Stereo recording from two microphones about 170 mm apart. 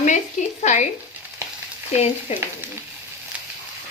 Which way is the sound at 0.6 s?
45° left (ahead or behind).